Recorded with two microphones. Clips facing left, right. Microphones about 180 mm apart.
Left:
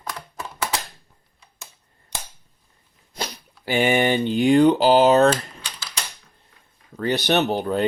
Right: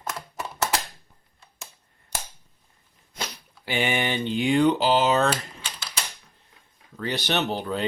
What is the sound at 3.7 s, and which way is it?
Speech, 45° left (ahead or behind).